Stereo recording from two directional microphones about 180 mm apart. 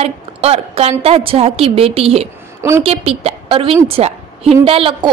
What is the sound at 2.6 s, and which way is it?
Speech, 15° right (ahead or behind).